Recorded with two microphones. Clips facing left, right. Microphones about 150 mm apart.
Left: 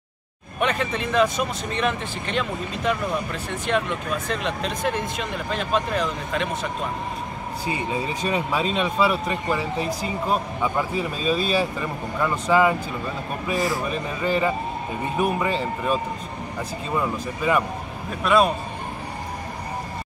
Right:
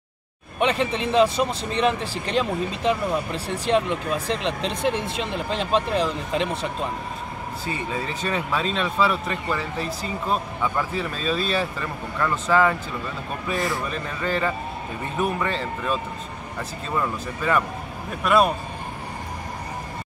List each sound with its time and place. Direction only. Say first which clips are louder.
0.6 s speech: right 2 dB; 30° right (ahead or behind)
7.6 s speech: left 3 dB; 15° left (ahead or behind)
13.5 s speech: left 2 dB; centre (ahead or behind)
18.2 s a man's voice: even; centre (ahead or behind)